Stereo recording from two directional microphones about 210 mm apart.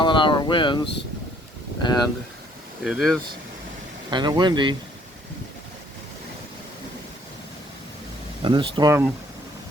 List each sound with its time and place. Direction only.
0.0 s a sound: 25° left (ahead or behind)
1.8 s speech: 20° left (ahead or behind)
2.8 s speech: centre (ahead or behind)
4.1 s speech: 20° right (ahead or behind)
8.4 s speech: 25° right (ahead or behind)